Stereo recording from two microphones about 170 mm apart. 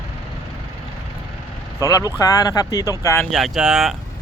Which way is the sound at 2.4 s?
20° left (ahead or behind).